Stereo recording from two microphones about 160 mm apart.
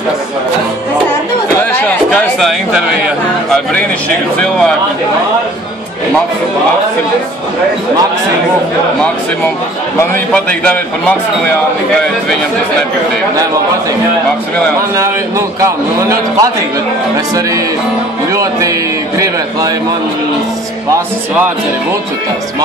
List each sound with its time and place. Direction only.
2.1 s speech: centre (ahead or behind)
4.4 s speech: 5° left (ahead or behind)
10.3 s a man's voice: 10° left (ahead or behind)
15.0 s a man's voice: 20° right (ahead or behind)
18.3 s a man's voice: 20° right (ahead or behind)